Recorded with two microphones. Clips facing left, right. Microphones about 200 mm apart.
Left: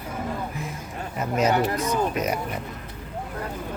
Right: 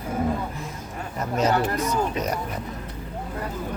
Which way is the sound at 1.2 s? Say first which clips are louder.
Left 1 dB; centre (ahead or behind).